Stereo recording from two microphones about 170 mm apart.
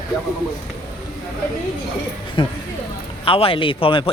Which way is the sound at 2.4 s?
30° left (ahead or behind).